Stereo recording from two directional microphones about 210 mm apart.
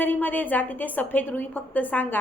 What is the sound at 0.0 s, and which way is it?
A woman's voice, 10° left (ahead or behind).